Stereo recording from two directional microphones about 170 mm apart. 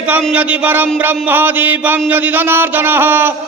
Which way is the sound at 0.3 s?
10° right (ahead or behind).